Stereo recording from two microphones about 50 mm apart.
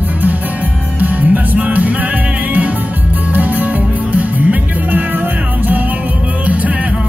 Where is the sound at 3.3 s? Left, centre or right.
Right.